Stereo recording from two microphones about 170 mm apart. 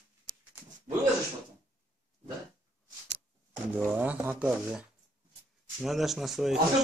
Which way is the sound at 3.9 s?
10° right (ahead or behind).